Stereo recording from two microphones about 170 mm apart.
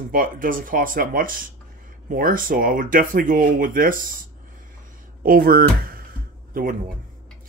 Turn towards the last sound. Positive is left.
turn(degrees=-55)  # may be behind; listen again after turning